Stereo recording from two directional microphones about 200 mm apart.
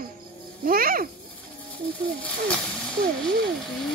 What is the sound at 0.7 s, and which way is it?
Speech, 45° right (ahead or behind).